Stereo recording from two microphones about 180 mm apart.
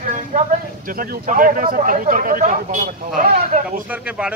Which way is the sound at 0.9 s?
50° right (ahead or behind).